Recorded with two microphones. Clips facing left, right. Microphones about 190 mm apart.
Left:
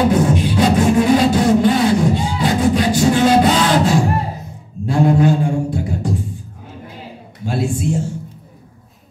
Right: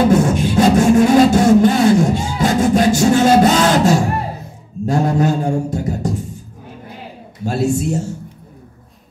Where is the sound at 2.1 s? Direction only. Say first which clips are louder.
Right 1 dB; 45° right (ahead or behind).